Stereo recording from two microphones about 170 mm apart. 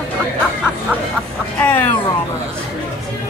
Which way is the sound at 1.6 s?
10° left (ahead or behind).